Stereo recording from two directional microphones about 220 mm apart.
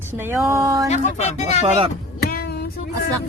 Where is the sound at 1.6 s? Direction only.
30° right (ahead or behind).